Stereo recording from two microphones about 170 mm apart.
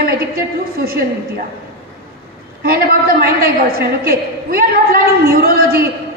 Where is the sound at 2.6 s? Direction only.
60° right (ahead or behind).